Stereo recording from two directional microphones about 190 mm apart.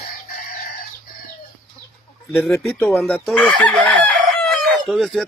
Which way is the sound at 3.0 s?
5° left (ahead or behind).